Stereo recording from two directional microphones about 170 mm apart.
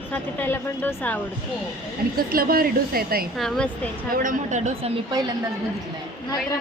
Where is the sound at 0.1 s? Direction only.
10° left (ahead or behind).